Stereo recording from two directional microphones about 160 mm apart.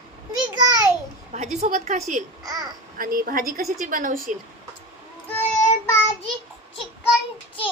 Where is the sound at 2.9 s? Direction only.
65° right (ahead or behind).